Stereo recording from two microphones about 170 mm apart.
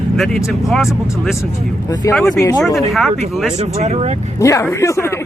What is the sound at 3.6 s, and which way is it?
Speech, 40° right (ahead or behind).